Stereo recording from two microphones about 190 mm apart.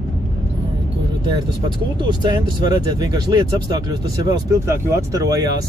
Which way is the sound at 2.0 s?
20° right (ahead or behind).